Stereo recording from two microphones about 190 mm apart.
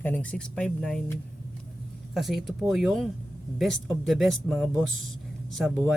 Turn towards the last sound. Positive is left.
turn(degrees=5)  # may be behind; listen again after turning